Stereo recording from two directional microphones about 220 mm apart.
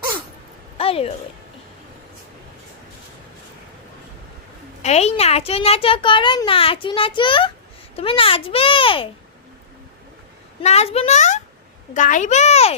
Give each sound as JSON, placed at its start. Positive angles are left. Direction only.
{"t": 0.8, "sound": "a sound", "side_deg": 25}
{"t": 4.8, "sound": "a child's voice", "side_deg": 30}
{"t": 10.6, "sound": "a woman's voice", "side_deg": 30}